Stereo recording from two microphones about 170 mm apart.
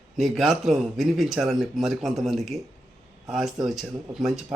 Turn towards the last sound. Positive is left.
turn(degrees=0)  # may be behind; listen again after turning